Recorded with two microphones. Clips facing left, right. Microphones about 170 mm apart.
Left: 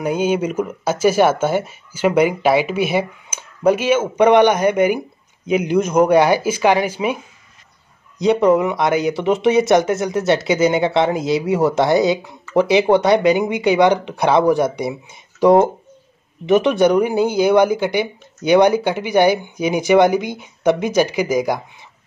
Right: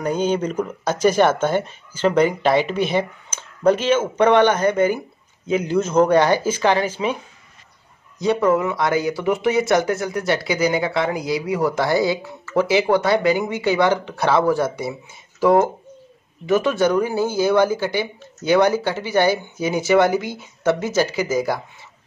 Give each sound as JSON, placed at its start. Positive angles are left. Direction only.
{"t": 0.0, "sound": "speech", "side_deg": 10}
{"t": 8.2, "sound": "speech", "side_deg": 20}